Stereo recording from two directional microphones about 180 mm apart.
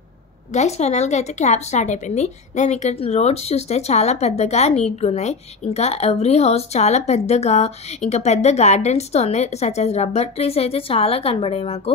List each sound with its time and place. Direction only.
0.5 s speech: 40° left (ahead or behind)